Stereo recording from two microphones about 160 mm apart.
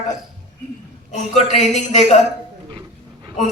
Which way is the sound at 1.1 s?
45° left (ahead or behind).